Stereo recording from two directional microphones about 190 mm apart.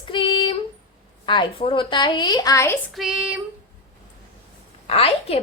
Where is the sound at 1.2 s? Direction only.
25° left (ahead or behind).